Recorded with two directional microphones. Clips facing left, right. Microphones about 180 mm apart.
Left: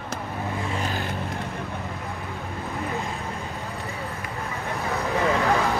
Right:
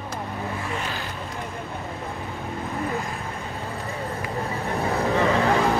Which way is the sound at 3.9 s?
35° right (ahead or behind).